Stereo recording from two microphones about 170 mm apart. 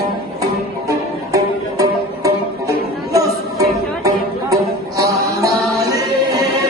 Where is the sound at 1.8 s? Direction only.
20° right (ahead or behind).